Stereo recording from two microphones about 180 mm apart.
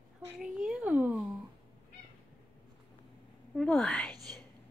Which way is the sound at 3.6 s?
5° left (ahead or behind).